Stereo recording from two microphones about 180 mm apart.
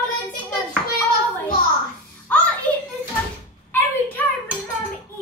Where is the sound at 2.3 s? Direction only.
10° left (ahead or behind).